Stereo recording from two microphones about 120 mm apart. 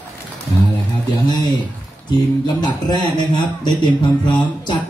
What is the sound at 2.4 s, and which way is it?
A man's voice, 35° left (ahead or behind).